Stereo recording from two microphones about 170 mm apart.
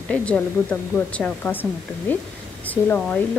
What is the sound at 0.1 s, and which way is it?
A woman's voice, 5° left (ahead or behind).